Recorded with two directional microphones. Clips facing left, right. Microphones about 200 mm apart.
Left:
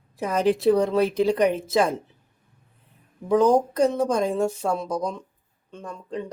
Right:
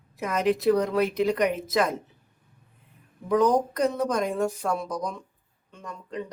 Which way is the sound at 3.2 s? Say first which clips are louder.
Left 3 dB; 30° left (ahead or behind).